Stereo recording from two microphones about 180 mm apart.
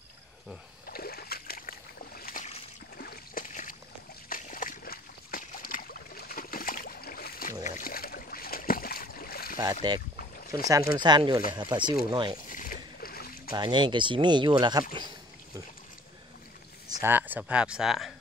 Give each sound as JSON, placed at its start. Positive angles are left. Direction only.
{"t": 0.8, "sound": "boat", "side_deg": 55}
{"t": 3.0, "sound": "a sound", "side_deg": 55}
{"t": 7.6, "sound": "boat", "side_deg": 50}
{"t": 9.6, "sound": "speech", "side_deg": -20}
{"t": 12.4, "sound": "boat", "side_deg": 50}
{"t": 13.5, "sound": "speech", "side_deg": -25}
{"t": 17.0, "sound": "speech", "side_deg": -10}